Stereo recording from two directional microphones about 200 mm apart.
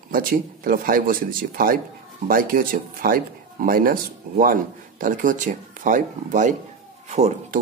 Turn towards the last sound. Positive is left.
turn(degrees=-35)  # may be behind; listen again after turning